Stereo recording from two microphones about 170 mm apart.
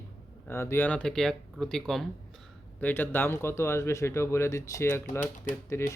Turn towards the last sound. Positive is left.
turn(degrees=15)  # may be behind; listen again after turning